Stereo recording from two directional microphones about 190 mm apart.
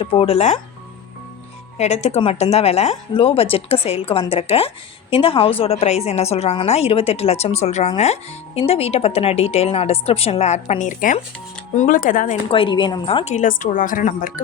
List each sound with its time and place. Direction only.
0.0 s a woman's voice: 30° left (ahead or behind)
1.8 s a woman's voice: 35° left (ahead or behind)
12.5 s a woman's voice: 25° left (ahead or behind); by 14.4 s 45° left (ahead or behind)